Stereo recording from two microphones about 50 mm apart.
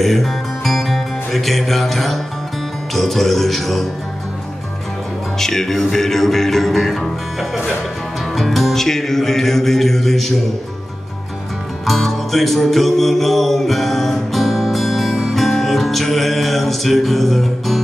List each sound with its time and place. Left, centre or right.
0.0 s music: centre
5.4 s music: centre
11.8 s music: centre